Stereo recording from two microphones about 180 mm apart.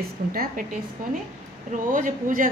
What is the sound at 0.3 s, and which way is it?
Speech, 50° right (ahead or behind).